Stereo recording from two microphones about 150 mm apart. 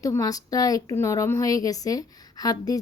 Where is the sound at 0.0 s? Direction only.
25° left (ahead or behind).